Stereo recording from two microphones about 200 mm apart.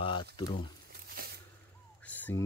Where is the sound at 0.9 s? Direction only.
50° right (ahead or behind).